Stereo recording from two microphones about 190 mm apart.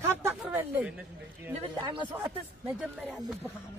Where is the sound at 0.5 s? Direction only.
10° right (ahead or behind).